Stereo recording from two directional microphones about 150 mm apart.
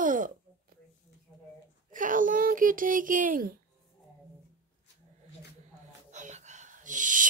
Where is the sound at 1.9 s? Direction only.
60° right (ahead or behind).